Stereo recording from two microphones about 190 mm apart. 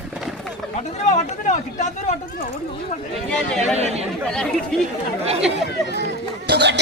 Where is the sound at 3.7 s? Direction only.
35° right (ahead or behind).